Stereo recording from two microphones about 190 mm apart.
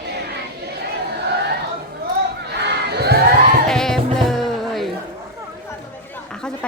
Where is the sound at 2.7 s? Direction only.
60° right (ahead or behind).